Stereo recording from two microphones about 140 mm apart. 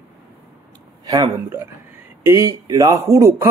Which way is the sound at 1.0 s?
25° right (ahead or behind).